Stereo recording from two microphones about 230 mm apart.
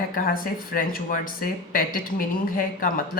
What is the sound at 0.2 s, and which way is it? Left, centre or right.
Speech, left.